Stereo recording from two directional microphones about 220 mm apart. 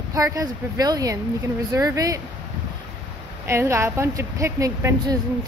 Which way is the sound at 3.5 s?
10° right (ahead or behind).